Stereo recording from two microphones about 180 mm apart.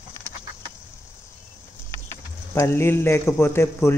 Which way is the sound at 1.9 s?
15° left (ahead or behind).